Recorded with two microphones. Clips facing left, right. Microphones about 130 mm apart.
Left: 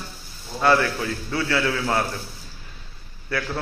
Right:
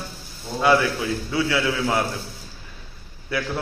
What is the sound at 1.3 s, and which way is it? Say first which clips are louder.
Speech: even; 15° right (ahead or behind).